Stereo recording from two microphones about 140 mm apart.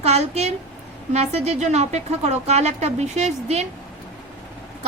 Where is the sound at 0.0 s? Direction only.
50° right (ahead or behind).